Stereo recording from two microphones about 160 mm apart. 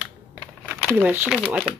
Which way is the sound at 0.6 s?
10° right (ahead or behind).